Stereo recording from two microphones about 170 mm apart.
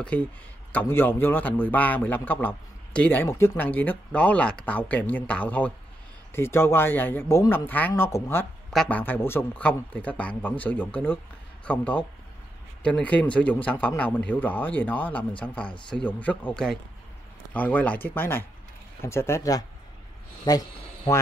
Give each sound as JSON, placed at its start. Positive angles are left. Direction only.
{"t": 0.7, "sound": "a man's voice", "side_deg": 15}